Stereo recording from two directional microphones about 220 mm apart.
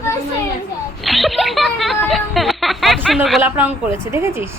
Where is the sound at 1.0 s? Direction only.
Centre (ahead or behind).